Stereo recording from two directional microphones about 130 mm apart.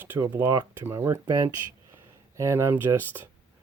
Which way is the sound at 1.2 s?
35° right (ahead or behind).